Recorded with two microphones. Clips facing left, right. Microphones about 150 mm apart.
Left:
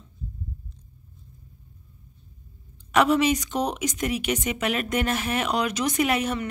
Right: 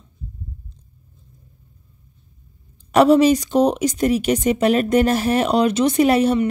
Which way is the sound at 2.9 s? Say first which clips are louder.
Right 8 dB; 35° right (ahead or behind).